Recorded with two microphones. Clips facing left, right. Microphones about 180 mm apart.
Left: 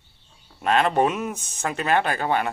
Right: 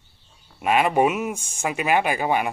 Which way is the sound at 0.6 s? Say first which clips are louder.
Right 1 dB; 10° right (ahead or behind).